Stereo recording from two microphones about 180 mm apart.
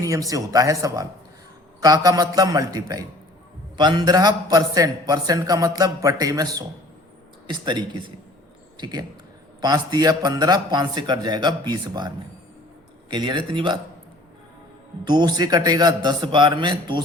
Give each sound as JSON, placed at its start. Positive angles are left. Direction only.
{"t": 0.0, "sound": "a man's voice", "side_deg": -20}
{"t": 15.0, "sound": "a man's voice", "side_deg": -25}